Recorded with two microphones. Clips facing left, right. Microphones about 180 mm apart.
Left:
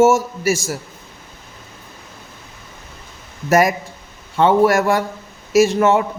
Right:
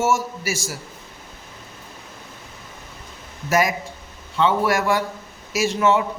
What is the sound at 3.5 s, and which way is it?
Speech, 50° left (ahead or behind).